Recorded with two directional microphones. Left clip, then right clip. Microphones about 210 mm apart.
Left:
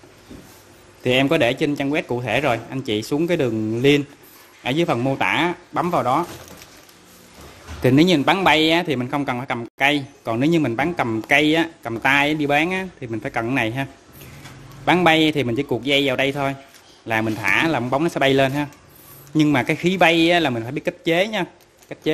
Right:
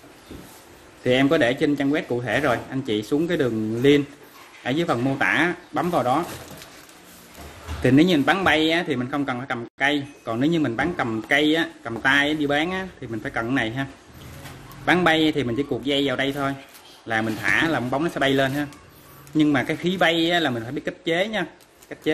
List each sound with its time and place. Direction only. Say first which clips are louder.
1.0 s speech: left 1 dB; 35° left (ahead or behind)
7.8 s speech: left 2 dB; 35° left (ahead or behind)
14.9 s speech: left 3 dB; 35° left (ahead or behind)